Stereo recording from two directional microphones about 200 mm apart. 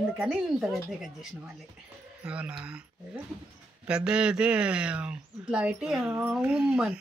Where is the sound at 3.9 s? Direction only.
5° right (ahead or behind).